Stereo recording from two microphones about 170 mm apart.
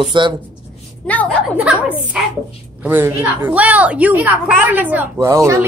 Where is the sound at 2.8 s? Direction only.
10° right (ahead or behind).